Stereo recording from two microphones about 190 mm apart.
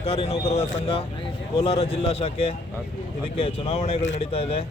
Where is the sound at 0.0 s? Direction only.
30° left (ahead or behind).